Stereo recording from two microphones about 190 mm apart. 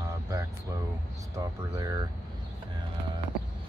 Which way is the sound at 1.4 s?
20° right (ahead or behind).